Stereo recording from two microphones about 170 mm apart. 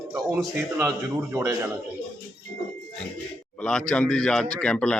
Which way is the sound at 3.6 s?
5° left (ahead or behind).